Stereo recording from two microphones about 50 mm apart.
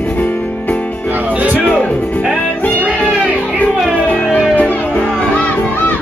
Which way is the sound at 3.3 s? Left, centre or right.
Left.